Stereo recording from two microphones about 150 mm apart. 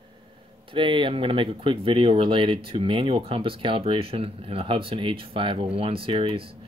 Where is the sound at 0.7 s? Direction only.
35° right (ahead or behind).